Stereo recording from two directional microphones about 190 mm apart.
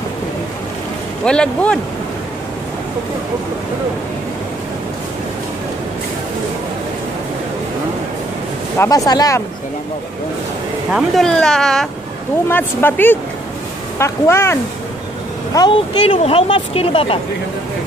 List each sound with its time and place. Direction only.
1.2 s speech: 5° left (ahead or behind)
8.7 s speech: 15° left (ahead or behind)
10.9 s speech: centre (ahead or behind)
15.5 s speech: 25° left (ahead or behind)